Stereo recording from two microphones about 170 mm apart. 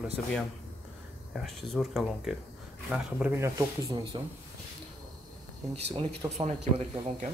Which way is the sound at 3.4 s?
20° right (ahead or behind).